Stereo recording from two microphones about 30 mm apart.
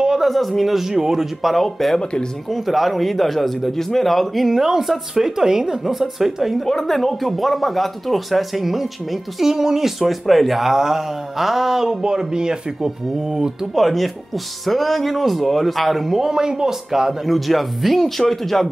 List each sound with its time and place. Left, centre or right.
0.2 s speech: centre
0.7 s a woman's voice: centre
1.4 s speech: centre
4.5 s a woman's voice: centre
6.6 s a woman's voice: centre
9.9 s speech: centre
10.7 s a woman's voice: centre
12.0 s speech: right
13.7 s speech: centre
16.2 s speech: right
17.3 s speech: centre